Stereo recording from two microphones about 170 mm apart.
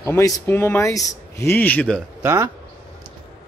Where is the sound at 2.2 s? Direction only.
15° right (ahead or behind).